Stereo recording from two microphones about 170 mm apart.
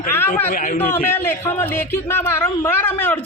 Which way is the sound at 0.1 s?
15° left (ahead or behind).